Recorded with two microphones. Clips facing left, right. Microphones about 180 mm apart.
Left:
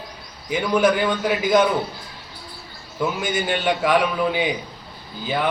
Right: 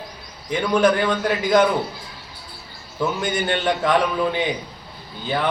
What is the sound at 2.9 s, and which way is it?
A man's voice, 5° left (ahead or behind).